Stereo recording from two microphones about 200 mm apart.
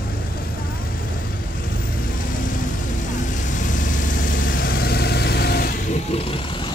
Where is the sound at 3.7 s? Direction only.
40° left (ahead or behind).